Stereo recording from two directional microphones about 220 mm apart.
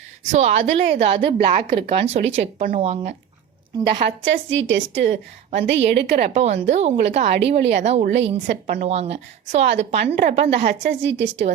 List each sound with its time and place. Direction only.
0.3 s a woman's voice: 30° right (ahead or behind)
4.3 s a woman's voice: 55° right (ahead or behind)
6.3 s a woman's voice: 30° right (ahead or behind)
10.7 s a woman's voice: 50° right (ahead or behind)